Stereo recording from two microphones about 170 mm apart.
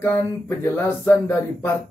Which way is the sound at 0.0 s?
15° left (ahead or behind).